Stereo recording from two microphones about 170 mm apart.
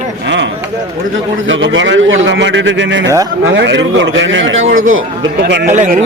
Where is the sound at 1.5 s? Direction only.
90° right.